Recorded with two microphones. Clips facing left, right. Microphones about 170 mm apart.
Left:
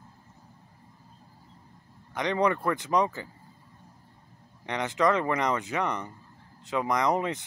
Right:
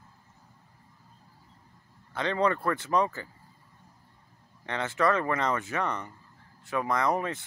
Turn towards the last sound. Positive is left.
turn(degrees=20)  # may be behind; listen again after turning